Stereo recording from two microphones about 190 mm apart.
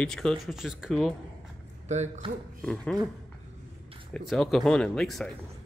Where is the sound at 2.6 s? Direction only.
5° left (ahead or behind).